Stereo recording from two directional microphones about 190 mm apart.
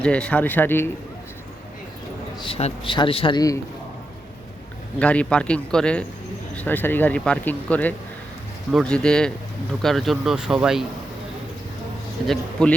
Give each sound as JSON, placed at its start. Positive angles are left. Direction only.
{"t": 0.0, "sound": "speech", "side_deg": 5}
{"t": 2.4, "sound": "a man's voice", "side_deg": 30}
{"t": 4.9, "sound": "speech", "side_deg": 5}
{"t": 12.3, "sound": "speech", "side_deg": 5}